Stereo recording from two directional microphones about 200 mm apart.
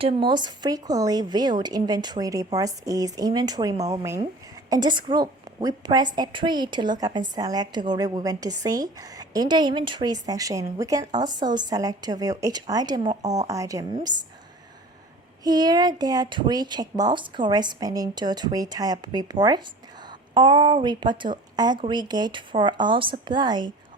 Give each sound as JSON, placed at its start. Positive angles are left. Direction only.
{"t": 0.0, "sound": "a woman's voice", "side_deg": -25}
{"t": 15.4, "sound": "a woman's voice", "side_deg": -20}